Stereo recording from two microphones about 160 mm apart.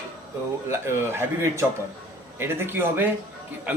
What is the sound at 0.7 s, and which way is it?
Speech, 15° right (ahead or behind).